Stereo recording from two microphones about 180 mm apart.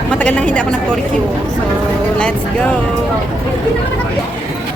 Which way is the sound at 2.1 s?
5° left (ahead or behind).